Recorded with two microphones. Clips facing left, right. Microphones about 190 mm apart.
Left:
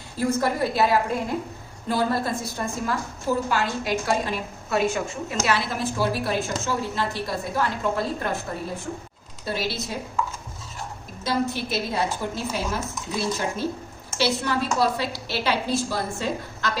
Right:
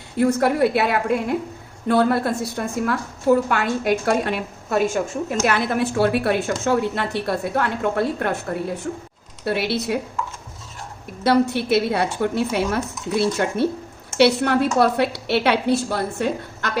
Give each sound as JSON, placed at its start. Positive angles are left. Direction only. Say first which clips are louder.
{"t": 0.2, "sound": "a woman's voice", "louder": "right 6 dB", "side_deg": -65}
{"t": 4.8, "sound": "a woman's voice", "louder": "right 4 dB", "side_deg": -50}
{"t": 9.4, "sound": "a woman's voice", "louder": "right 6 dB", "side_deg": -65}
{"t": 11.2, "sound": "a woman's voice", "louder": "right 7 dB", "side_deg": -65}